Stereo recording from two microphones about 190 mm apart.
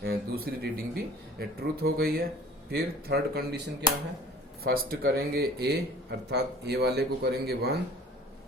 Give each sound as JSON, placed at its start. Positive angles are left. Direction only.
{"t": 0.0, "sound": "speech", "side_deg": -55}